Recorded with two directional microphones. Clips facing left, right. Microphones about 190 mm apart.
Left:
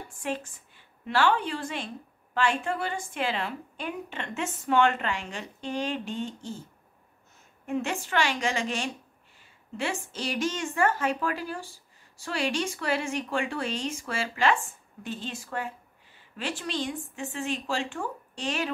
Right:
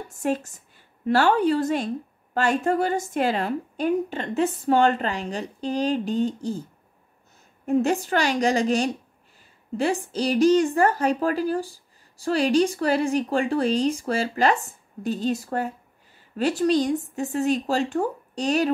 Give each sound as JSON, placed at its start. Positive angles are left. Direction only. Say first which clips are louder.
{"t": 0.2, "sound": "a woman's voice", "louder": "right 8 dB", "side_deg": -40}
{"t": 7.6, "sound": "a woman's voice", "louder": "right 9 dB", "side_deg": -40}